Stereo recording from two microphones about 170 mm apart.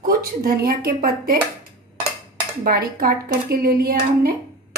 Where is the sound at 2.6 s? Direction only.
60° right (ahead or behind).